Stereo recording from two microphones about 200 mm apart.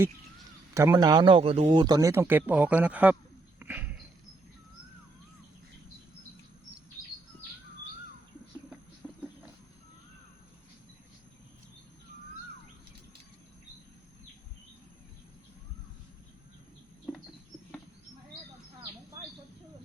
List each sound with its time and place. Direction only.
0.7 s speech: 15° right (ahead or behind)
3.6 s dog: 10° right (ahead or behind)
9.0 s a sound: 5° left (ahead or behind)